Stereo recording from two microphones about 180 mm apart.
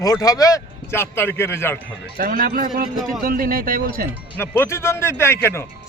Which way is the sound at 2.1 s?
55° right (ahead or behind).